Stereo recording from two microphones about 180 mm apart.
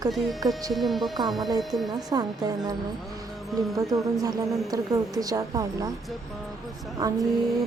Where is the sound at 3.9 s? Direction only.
20° right (ahead or behind).